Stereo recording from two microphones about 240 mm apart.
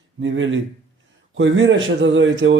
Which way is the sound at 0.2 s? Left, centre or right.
Right.